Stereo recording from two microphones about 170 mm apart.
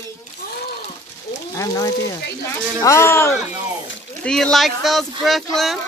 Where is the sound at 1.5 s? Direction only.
20° left (ahead or behind).